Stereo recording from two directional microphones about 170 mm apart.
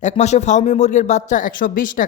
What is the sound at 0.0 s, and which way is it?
Speech, 40° left (ahead or behind).